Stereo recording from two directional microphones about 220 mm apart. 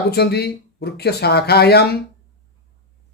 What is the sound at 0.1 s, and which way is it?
Speech, 45° left (ahead or behind).